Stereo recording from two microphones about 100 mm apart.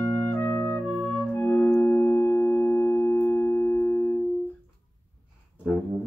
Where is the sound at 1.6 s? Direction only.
25° left (ahead or behind).